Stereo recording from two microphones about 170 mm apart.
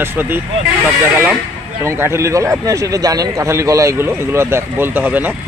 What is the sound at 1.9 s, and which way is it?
Speech, 15° right (ahead or behind).